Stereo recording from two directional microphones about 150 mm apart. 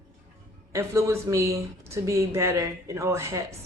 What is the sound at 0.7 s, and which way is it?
Speech, 20° right (ahead or behind).